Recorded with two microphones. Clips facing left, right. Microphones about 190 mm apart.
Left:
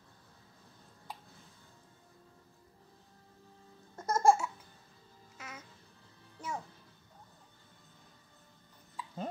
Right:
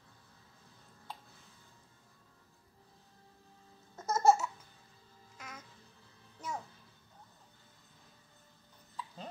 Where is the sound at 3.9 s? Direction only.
10° left (ahead or behind).